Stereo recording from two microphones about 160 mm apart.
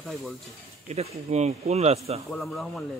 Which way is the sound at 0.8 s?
40° right (ahead or behind).